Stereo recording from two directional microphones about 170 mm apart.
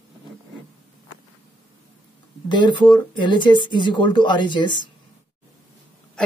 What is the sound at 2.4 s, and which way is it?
Speech, 25° left (ahead or behind).